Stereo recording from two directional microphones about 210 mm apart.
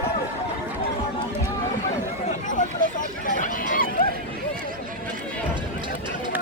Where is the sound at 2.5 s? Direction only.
40° left (ahead or behind).